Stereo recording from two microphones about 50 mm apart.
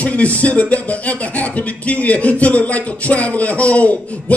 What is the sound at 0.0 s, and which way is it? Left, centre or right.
Speech, left.